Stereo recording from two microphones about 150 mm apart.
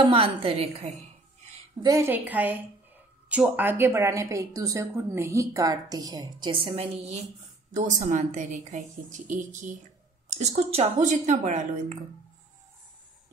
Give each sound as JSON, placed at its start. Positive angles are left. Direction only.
{"t": 0.0, "sound": "a woman's voice", "side_deg": -40}
{"t": 1.8, "sound": "a woman's voice", "side_deg": -20}
{"t": 7.7, "sound": "a woman's voice", "side_deg": -55}
{"t": 10.3, "sound": "a woman's voice", "side_deg": -45}